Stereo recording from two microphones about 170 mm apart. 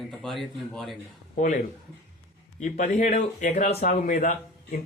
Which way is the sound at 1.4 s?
50° left (ahead or behind).